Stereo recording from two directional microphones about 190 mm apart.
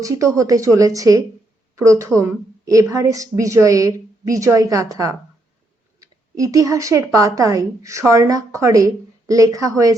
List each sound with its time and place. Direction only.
0.0 s a woman's voice: 15° right (ahead or behind)